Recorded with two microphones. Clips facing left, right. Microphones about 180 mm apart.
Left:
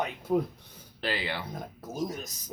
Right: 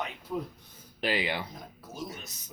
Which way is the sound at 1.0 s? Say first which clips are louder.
Right 2 dB; 15° right (ahead or behind).